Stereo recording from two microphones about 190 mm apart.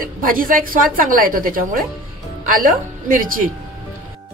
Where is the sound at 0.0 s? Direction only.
45° right (ahead or behind).